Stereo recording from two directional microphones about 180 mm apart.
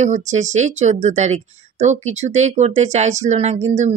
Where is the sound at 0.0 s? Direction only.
40° right (ahead or behind).